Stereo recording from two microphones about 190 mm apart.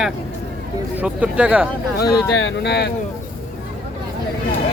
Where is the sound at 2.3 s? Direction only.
70° left (ahead or behind).